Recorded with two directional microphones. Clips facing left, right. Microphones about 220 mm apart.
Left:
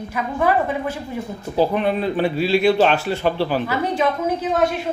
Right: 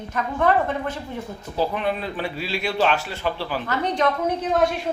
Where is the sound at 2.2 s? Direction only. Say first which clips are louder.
Left 12 dB; 60° left (ahead or behind).